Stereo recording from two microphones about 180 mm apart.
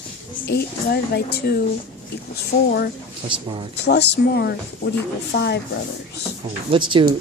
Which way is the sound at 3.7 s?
70° left (ahead or behind).